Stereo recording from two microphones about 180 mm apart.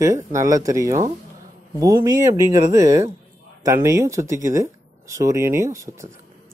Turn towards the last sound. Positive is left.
turn(degrees=-15)  # may be behind; listen again after turning